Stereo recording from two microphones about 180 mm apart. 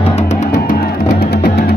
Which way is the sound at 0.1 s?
40° left (ahead or behind).